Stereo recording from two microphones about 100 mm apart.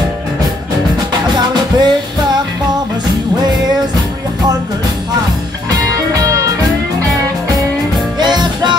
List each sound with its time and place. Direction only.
1.3 s music: 45° right (ahead or behind)
6.1 s music: 35° right (ahead or behind)
8.2 s music: 50° right (ahead or behind)